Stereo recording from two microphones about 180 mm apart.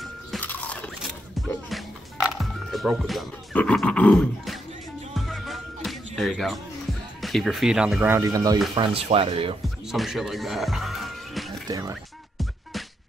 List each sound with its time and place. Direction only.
0.0 s a sound: 5° left (ahead or behind)
2.2 s speech: centre (ahead or behind)
5.1 s music: centre (ahead or behind); by 8.5 s 20° right (ahead or behind)
8.7 s speech: 30° right (ahead or behind)
9.8 s music: centre (ahead or behind)
11.6 s speech: 20° right (ahead or behind)